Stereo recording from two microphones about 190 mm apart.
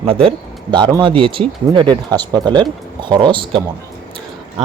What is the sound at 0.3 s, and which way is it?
Speech, 25° right (ahead or behind).